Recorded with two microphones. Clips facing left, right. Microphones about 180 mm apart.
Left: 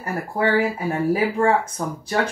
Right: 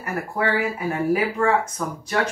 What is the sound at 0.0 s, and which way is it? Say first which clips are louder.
Speech: left 2 dB; 30° left (ahead or behind).